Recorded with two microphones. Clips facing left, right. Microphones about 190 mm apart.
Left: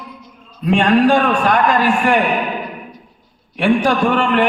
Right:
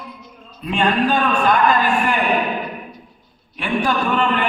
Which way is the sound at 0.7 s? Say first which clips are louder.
Left 6 dB; 75° left (ahead or behind).